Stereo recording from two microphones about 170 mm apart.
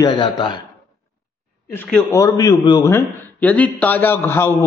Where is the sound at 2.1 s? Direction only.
20° left (ahead or behind).